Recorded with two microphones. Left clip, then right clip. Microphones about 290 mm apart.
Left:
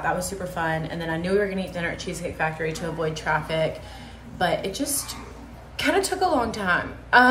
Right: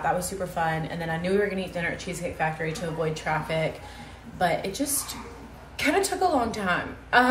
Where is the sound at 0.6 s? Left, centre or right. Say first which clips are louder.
Left 1 dB; centre.